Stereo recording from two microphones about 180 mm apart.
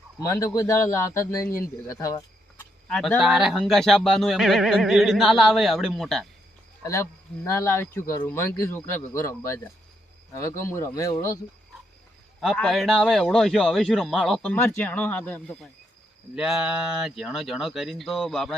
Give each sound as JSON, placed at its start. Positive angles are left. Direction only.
{"t": 0.2, "sound": "a man's voice", "side_deg": 15}
{"t": 2.9, "sound": "speech", "side_deg": 0}
{"t": 6.8, "sound": "a man's voice", "side_deg": 15}
{"t": 12.4, "sound": "speech", "side_deg": 0}